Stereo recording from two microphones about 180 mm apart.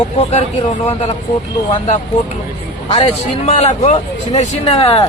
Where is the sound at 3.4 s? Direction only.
35° left (ahead or behind).